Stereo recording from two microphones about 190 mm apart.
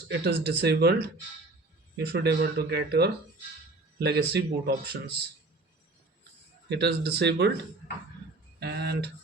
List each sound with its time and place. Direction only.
0.4 s speech: 60° right (ahead or behind)
6.7 s speech: 60° right (ahead or behind)